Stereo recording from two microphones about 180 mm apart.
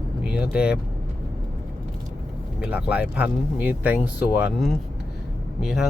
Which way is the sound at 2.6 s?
5° right (ahead or behind).